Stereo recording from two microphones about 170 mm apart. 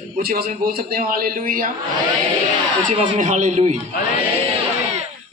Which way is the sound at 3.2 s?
45° right (ahead or behind).